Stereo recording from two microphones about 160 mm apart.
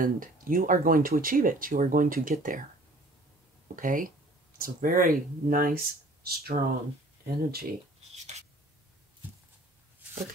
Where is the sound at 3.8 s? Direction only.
55° right (ahead or behind); by 6.6 s 75° right (ahead or behind).